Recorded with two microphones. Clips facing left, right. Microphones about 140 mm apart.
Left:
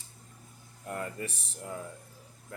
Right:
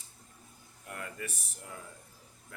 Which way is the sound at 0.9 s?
30° left (ahead or behind).